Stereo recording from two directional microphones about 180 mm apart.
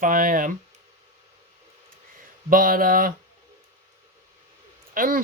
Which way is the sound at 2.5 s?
50° right (ahead or behind).